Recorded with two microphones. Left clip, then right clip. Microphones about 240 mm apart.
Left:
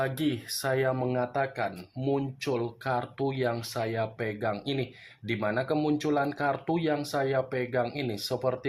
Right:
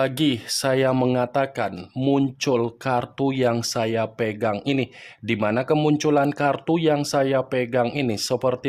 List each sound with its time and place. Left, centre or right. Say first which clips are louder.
0.0 s speech: right 8 dB; right